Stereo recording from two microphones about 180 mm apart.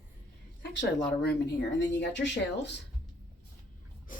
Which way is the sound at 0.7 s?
85° left.